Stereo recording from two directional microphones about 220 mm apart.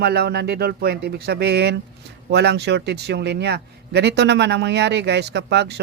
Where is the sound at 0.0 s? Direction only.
45° right (ahead or behind).